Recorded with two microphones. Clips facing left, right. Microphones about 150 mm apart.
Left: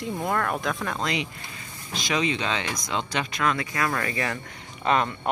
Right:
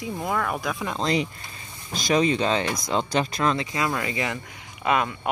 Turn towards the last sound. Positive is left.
turn(degrees=-10)  # may be behind; listen again after turning